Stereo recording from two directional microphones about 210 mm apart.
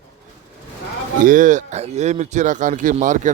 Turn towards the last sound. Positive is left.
turn(degrees=-35)  # may be behind; listen again after turning